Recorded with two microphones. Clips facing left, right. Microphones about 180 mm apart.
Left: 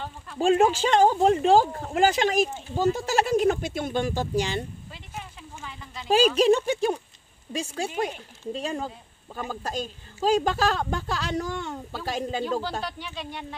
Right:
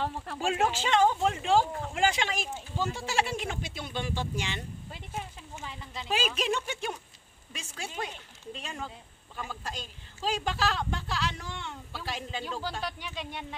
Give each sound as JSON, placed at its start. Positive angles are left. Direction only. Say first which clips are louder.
{"t": 0.6, "sound": "a woman's voice", "louder": "left 3 dB", "side_deg": 40}
{"t": 5.1, "sound": "a sound", "louder": "even", "side_deg": -25}
{"t": 6.0, "sound": "a woman's voice", "louder": "left 11 dB", "side_deg": 35}
{"t": 12.8, "sound": "speech", "louder": "left 2 dB", "side_deg": -15}